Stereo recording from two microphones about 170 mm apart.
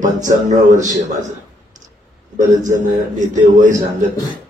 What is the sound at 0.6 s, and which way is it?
A man's voice, 45° right (ahead or behind).